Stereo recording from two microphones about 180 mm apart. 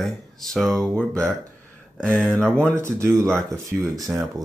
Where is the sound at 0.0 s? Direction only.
Centre (ahead or behind).